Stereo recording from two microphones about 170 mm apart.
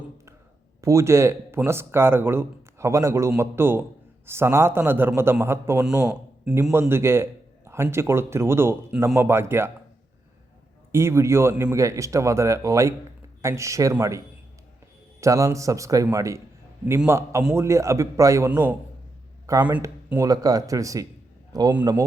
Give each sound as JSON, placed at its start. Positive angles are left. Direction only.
{"t": 0.8, "sound": "speech", "side_deg": -15}
{"t": 10.9, "sound": "speech", "side_deg": -15}
{"t": 15.2, "sound": "a man's voice", "side_deg": -20}